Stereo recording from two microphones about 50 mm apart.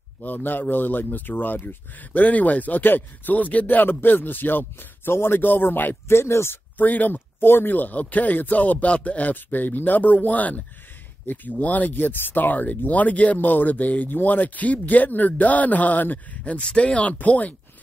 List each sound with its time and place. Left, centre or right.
0.2 s speech: left
6.0 s speech: left
6.8 s speech: left
7.3 s speech: left
16.5 s speech: left